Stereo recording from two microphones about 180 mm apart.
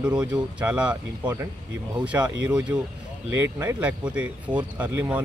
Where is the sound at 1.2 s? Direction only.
15° right (ahead or behind).